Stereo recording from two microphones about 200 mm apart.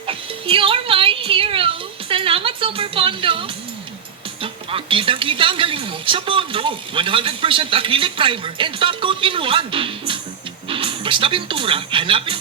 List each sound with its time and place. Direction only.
0.1 s speech: 25° right (ahead or behind)
4.7 s speech: 25° right (ahead or behind)